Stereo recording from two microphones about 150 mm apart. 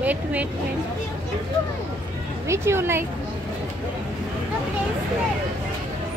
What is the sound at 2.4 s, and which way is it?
Speech, 15° right (ahead or behind).